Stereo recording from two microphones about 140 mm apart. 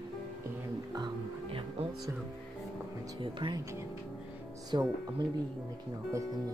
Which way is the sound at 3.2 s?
35° right (ahead or behind).